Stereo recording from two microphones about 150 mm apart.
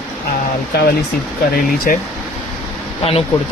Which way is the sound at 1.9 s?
70° left (ahead or behind).